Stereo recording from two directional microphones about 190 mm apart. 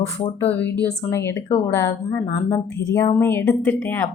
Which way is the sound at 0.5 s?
10° left (ahead or behind).